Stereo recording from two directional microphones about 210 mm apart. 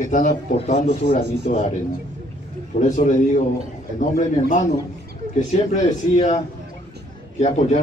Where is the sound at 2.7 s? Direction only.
35° left (ahead or behind).